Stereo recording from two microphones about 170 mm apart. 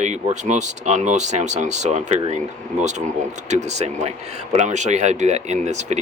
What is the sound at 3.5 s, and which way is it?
Speech, 40° right (ahead or behind).